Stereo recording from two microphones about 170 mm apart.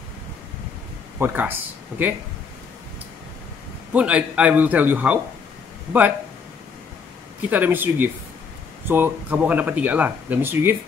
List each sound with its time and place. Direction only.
1.2 s speech: 10° right (ahead or behind)
3.9 s speech: 5° right (ahead or behind)
7.4 s speech: 10° right (ahead or behind)